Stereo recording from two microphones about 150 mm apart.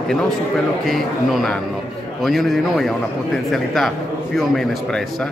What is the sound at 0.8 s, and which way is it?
A man's voice, centre (ahead or behind).